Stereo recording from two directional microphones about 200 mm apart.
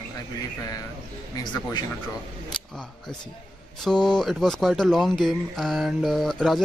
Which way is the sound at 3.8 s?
5° left (ahead or behind).